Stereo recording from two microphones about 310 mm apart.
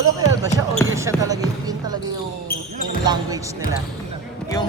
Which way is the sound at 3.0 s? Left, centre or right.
Centre.